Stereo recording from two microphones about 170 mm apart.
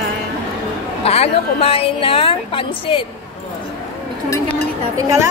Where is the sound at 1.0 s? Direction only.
35° left (ahead or behind).